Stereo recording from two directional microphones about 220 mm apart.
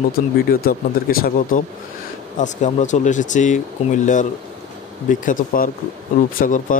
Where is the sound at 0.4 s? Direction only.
45° left (ahead or behind).